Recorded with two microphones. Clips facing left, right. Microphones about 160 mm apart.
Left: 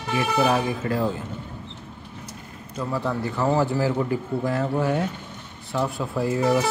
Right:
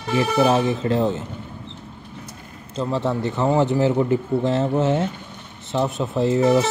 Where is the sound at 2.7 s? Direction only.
25° right (ahead or behind).